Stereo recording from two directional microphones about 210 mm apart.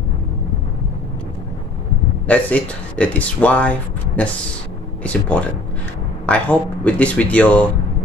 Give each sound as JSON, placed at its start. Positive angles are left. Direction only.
{"t": 2.2, "sound": "speech", "side_deg": 5}
{"t": 5.0, "sound": "speech", "side_deg": 5}